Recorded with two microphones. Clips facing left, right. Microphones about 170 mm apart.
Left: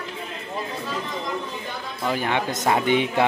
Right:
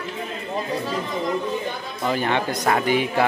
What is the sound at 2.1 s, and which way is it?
A man's voice, 10° left (ahead or behind).